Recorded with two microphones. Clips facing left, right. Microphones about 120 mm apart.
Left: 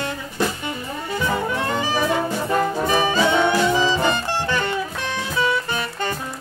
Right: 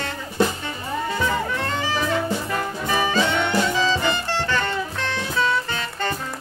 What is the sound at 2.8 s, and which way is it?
Brass instrument, 15° left (ahead or behind).